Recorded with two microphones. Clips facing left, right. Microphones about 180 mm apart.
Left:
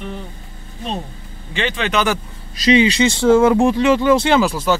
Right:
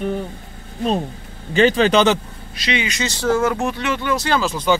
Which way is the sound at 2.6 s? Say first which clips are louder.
Left 10 dB; 30° left (ahead or behind).